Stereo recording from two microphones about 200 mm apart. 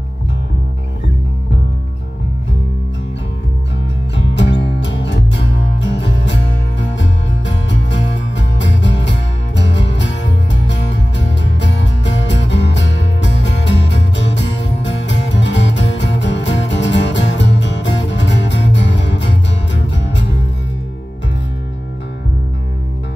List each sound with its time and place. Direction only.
4.1 s music: 65° left (ahead or behind)